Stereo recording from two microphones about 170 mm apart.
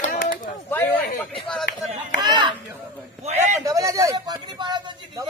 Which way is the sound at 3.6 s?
20° right (ahead or behind).